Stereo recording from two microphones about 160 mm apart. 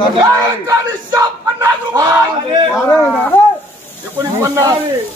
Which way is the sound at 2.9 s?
10° left (ahead or behind).